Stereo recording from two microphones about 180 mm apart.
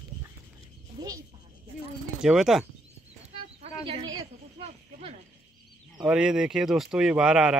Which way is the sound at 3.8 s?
25° right (ahead or behind).